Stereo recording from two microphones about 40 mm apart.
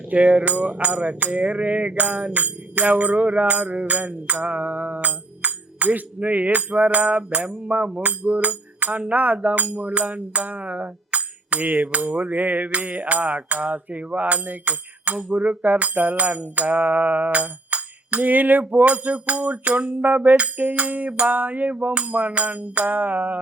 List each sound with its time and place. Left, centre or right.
0.1 s music: right
19.0 s music: right